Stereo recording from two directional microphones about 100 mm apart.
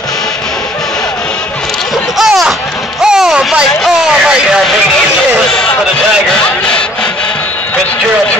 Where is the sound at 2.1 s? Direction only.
5° right (ahead or behind).